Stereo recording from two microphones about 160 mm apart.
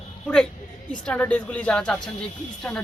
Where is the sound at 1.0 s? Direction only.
5° left (ahead or behind).